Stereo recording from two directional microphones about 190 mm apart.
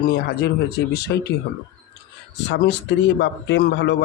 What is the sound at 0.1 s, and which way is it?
A man's voice, 60° left (ahead or behind).